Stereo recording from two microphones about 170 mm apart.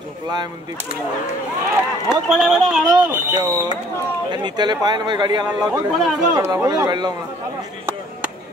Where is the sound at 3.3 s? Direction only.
20° right (ahead or behind).